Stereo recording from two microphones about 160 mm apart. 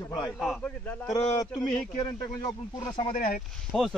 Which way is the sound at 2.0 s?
25° left (ahead or behind).